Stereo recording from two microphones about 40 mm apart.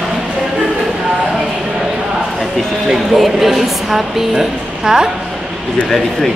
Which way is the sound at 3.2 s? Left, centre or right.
Centre.